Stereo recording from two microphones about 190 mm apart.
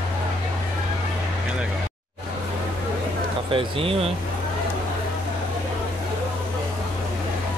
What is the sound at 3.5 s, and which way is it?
Speech, 30° right (ahead or behind).